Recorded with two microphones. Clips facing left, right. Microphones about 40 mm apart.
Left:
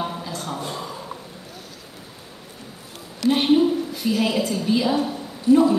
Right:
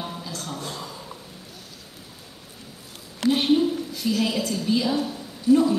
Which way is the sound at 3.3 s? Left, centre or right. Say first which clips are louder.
Left 3 dB; centre.